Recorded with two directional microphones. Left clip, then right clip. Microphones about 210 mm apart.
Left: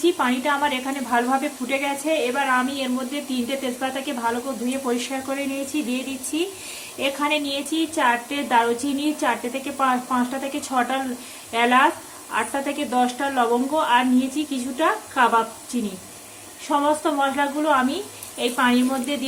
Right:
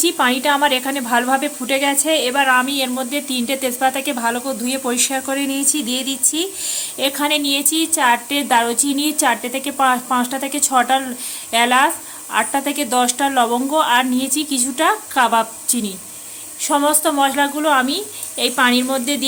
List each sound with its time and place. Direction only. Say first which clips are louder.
0.0 s speech: right 5 dB; 60° right (ahead or behind)
7.0 s speech: right 4 dB; 60° right (ahead or behind)
16.6 s speech: right 4 dB; 60° right (ahead or behind)